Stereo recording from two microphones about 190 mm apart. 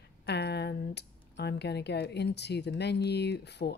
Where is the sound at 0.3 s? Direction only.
60° left (ahead or behind).